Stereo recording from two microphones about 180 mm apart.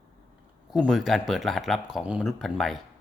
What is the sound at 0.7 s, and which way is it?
Speech, centre (ahead or behind).